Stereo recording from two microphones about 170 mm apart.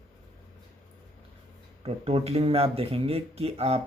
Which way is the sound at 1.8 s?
35° right (ahead or behind).